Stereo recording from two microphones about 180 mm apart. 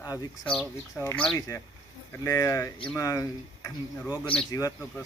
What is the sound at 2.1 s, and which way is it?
Speech, 20° left (ahead or behind).